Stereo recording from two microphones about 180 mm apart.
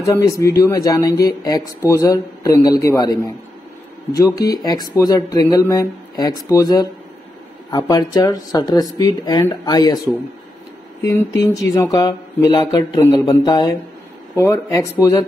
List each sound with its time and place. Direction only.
0.0 s speech: 15° left (ahead or behind)